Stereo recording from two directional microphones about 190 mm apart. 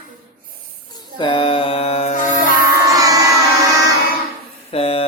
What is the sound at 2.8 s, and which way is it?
Child singing, 15° right (ahead or behind).